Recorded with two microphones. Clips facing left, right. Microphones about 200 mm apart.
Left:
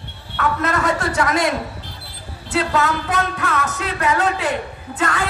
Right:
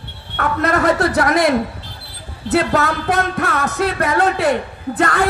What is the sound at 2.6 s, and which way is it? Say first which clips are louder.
Speech: right 3 dB; 40° right (ahead or behind).